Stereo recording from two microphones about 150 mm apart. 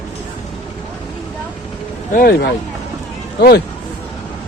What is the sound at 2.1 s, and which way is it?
Speech, 90° left.